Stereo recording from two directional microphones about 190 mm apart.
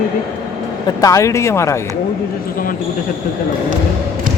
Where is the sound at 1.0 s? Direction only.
15° left (ahead or behind).